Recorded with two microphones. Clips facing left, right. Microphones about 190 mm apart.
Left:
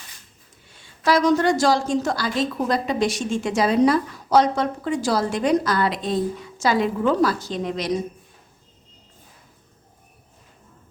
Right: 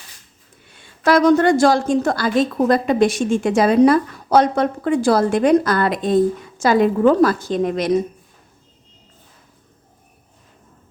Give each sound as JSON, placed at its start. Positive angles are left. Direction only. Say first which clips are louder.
{"t": 0.8, "sound": "a woman's voice", "louder": "right 5 dB", "side_deg": -55}